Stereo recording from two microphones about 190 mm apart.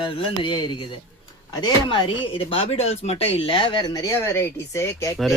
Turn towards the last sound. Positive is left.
turn(degrees=15)  # may be behind; listen again after turning